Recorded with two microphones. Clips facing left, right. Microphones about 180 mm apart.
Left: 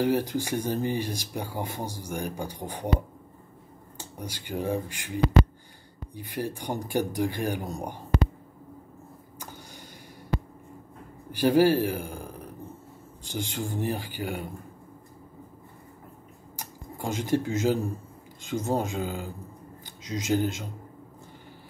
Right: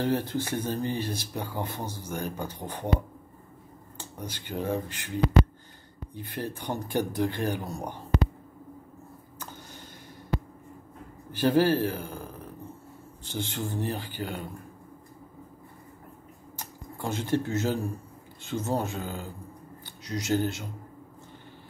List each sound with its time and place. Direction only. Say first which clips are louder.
0.0 s speech: left 2 dB; 15° left (ahead or behind)
4.2 s speech: left 1 dB; 10° left (ahead or behind)
9.4 s a sound: even; 10° left (ahead or behind)
11.3 s speech: left 2 dB; 10° left (ahead or behind)
16.5 s camera: left 1 dB; 15° left (ahead or behind)
18.4 s speech: left 2 dB; 15° left (ahead or behind)